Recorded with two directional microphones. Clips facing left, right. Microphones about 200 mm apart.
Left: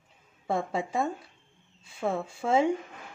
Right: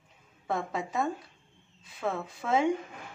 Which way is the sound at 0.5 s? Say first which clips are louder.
Left 3 dB; 30° left (ahead or behind).